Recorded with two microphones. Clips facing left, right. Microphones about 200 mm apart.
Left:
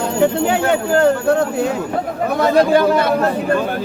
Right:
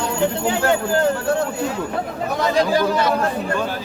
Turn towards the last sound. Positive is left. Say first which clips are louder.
# left 5 dB
turn(degrees=55)  # may be behind; listen again after turning